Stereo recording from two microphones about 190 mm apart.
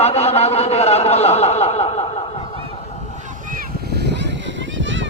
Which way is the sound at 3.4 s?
50° right (ahead or behind).